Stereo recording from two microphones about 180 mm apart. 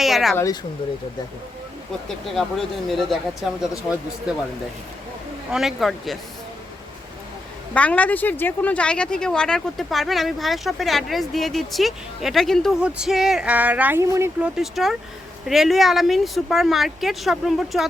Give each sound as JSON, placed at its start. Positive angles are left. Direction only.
{"t": 0.0, "sound": "speech", "side_deg": 0}
{"t": 0.3, "sound": "speech", "side_deg": 20}
{"t": 2.2, "sound": "speech", "side_deg": 0}
{"t": 5.5, "sound": "speech", "side_deg": 0}
{"t": 7.7, "sound": "speech", "side_deg": 5}
{"t": 14.4, "sound": "speech", "side_deg": -5}